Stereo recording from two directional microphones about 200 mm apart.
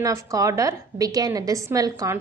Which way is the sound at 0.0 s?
15° right (ahead or behind).